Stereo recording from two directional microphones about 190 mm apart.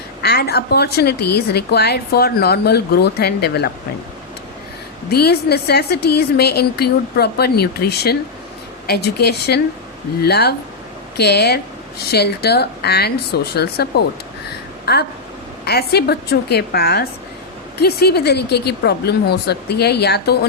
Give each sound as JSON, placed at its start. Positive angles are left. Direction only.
{"t": 0.2, "sound": "a woman's voice", "side_deg": 55}
{"t": 5.1, "sound": "a woman's voice", "side_deg": 55}